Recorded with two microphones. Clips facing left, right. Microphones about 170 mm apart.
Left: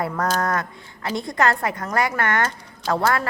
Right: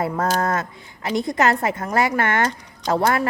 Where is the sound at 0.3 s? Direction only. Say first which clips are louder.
Right 1 dB; 25° right (ahead or behind).